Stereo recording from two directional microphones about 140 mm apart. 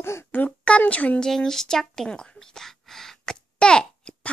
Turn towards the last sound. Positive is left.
turn(degrees=5)  # may be behind; listen again after turning